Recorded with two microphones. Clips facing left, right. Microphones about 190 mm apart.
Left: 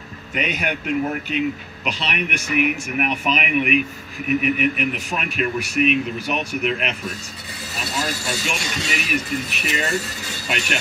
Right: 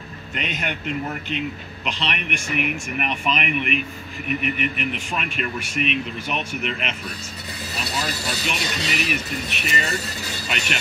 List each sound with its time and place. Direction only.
0.3 s a man's voice: 5° left (ahead or behind)
8.0 s speech: 45° left (ahead or behind)